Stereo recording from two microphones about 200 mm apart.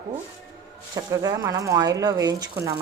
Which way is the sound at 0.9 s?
15° right (ahead or behind).